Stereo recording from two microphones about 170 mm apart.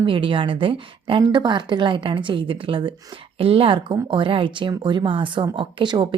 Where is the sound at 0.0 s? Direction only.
30° right (ahead or behind).